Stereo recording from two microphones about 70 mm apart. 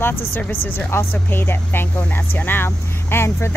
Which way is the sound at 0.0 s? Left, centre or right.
Left.